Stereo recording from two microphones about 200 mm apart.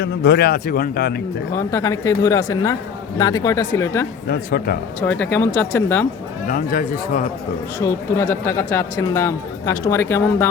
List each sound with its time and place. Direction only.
0.0 s a man's voice: 55° left (ahead or behind)
1.5 s speech: 15° left (ahead or behind)
4.3 s a man's voice: 50° left (ahead or behind)
4.9 s speech: 10° left (ahead or behind)
6.5 s a man's voice: 45° left (ahead or behind)
7.8 s speech: 15° left (ahead or behind)